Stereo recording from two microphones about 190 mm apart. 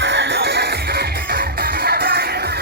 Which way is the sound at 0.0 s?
65° right (ahead or behind).